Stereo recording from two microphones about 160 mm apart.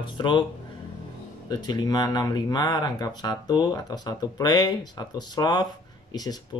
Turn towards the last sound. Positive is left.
turn(degrees=25)  # may be behind; listen again after turning